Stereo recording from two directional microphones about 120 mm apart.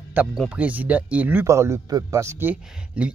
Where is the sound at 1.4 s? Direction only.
25° right (ahead or behind).